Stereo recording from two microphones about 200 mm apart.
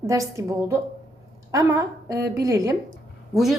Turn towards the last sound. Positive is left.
turn(degrees=0)  # may be behind; listen again after turning